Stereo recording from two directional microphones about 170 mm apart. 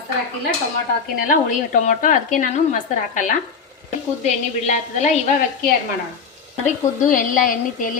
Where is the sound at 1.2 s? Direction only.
50° left (ahead or behind).